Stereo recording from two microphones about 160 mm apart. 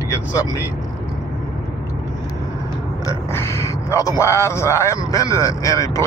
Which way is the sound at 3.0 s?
15° left (ahead or behind).